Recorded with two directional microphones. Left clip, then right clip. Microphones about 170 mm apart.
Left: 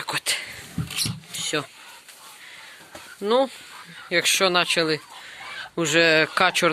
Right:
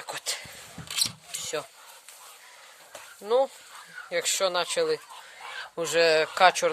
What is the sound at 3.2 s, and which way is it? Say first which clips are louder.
Speech: left 3 dB; 10° right (ahead or behind).